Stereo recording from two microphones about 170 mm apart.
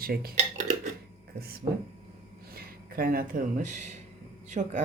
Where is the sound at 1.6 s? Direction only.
25° right (ahead or behind).